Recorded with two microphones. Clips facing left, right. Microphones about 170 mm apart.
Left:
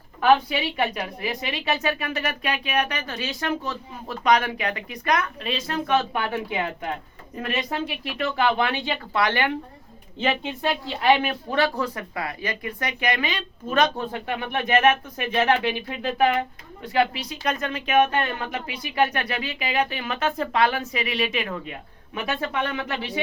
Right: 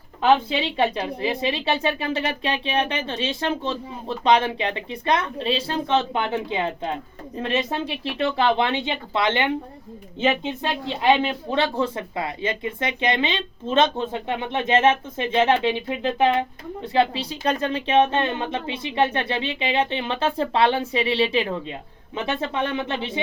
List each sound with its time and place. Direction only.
0.2 s speech: 25° right (ahead or behind)